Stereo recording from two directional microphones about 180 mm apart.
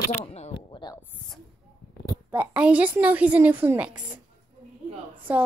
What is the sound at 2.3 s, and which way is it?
A woman's voice, 5° right (ahead or behind).